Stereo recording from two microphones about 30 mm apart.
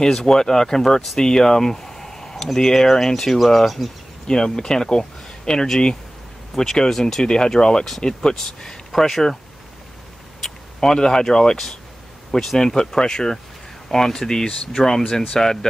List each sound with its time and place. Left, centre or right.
0.0 s speech: centre
4.3 s speech: left
6.5 s speech: centre
10.8 s speech: left